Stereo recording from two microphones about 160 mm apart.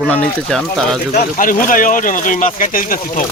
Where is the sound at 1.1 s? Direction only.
60° left (ahead or behind).